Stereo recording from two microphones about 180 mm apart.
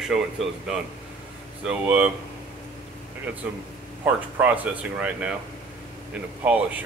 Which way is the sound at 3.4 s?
10° right (ahead or behind).